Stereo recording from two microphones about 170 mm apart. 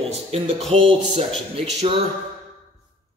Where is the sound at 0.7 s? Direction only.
35° right (ahead or behind).